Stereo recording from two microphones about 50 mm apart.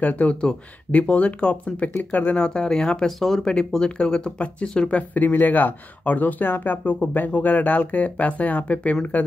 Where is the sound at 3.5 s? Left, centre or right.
Centre.